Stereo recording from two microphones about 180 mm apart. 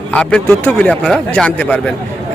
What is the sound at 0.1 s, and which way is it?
Speech, 5° left (ahead or behind).